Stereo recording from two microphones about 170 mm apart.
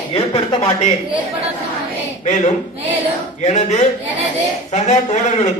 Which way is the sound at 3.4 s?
40° left (ahead or behind).